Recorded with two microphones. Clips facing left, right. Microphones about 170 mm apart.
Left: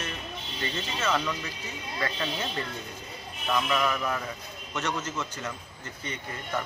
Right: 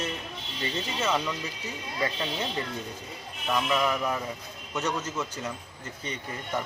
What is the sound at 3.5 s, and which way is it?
Speech, 15° right (ahead or behind).